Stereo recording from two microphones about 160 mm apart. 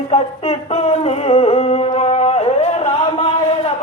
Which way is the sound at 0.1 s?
40° left (ahead or behind).